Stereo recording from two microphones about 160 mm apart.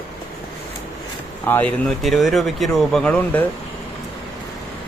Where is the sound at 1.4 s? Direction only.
10° left (ahead or behind).